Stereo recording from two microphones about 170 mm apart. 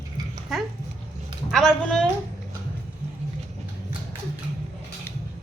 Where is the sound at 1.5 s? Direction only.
5° left (ahead or behind).